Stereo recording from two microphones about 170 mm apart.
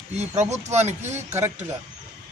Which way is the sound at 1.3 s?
15° right (ahead or behind).